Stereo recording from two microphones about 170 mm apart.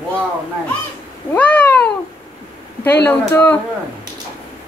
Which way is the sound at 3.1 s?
10° left (ahead or behind).